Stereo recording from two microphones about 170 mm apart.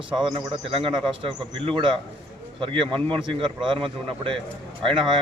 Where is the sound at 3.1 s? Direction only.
30° right (ahead or behind).